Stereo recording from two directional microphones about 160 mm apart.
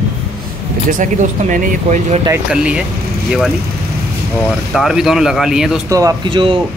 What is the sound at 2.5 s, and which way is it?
Speech, 5° right (ahead or behind).